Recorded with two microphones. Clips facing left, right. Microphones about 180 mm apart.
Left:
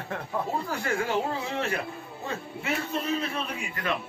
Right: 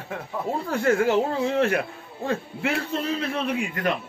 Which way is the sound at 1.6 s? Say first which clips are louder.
Right 7 dB; 65° right (ahead or behind).